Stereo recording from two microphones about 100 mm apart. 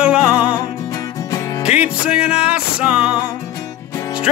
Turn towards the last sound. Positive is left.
turn(degrees=-10)  # may be behind; listen again after turning